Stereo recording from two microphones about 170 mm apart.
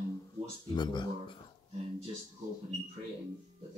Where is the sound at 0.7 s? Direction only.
25° left (ahead or behind).